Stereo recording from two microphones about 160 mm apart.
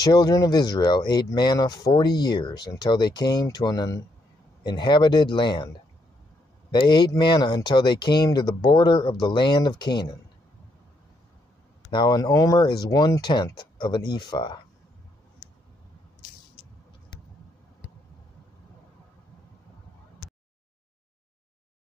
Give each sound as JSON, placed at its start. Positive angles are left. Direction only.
{"t": 0.0, "sound": "speech", "side_deg": 25}
{"t": 6.7, "sound": "speech", "side_deg": 30}
{"t": 11.9, "sound": "speech", "side_deg": 25}